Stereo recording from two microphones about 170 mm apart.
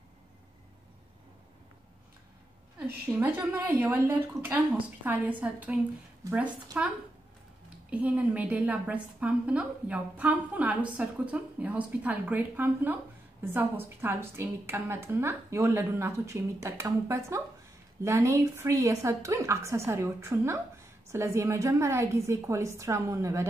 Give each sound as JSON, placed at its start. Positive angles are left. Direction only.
{"t": 2.9, "sound": "a woman's voice", "side_deg": -10}